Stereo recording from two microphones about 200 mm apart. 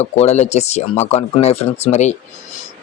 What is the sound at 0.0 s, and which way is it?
Speech, 35° left (ahead or behind).